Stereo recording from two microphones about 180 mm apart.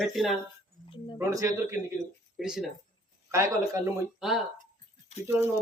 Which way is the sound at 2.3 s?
5° right (ahead or behind).